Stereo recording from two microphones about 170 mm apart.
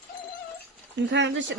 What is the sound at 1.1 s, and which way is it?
Speech, 90° right.